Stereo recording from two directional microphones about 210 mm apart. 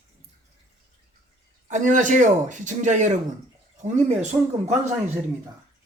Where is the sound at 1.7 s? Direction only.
35° right (ahead or behind).